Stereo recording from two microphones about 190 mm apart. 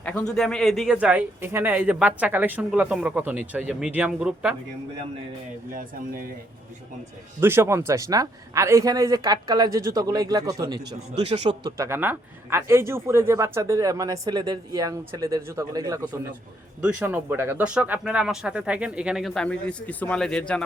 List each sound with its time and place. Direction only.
0.0 s speech: 5° left (ahead or behind)
5.7 s speech: 45° right (ahead or behind)
7.3 s speech: 10° right (ahead or behind); by 20.4 s 5° left (ahead or behind)